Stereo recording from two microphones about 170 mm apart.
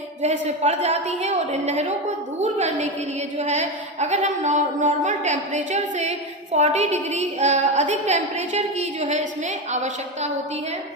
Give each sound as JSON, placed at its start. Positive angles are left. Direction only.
{"t": 0.2, "sound": "a woman's voice", "side_deg": -40}